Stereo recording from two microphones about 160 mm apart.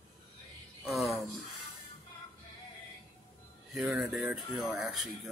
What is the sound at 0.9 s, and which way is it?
Speech, centre (ahead or behind).